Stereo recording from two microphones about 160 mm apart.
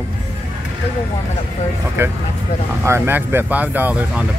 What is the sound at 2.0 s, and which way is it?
Speech, 15° right (ahead or behind).